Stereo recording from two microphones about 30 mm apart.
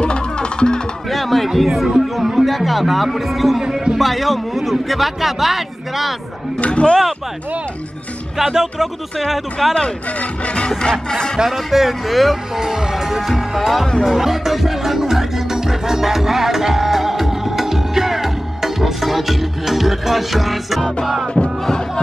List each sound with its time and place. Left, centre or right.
0.0 s music: left
1.1 s a sound: centre
1.6 s a man's voice: centre
3.6 s a man's voice: right
4.0 s a man's voice: centre
6.6 s speech: left
9.2 s a man's voice: centre
10.4 s music: left
10.8 s speech: left
11.3 s speech: centre
12.5 s speech: centre
13.3 s speech: centre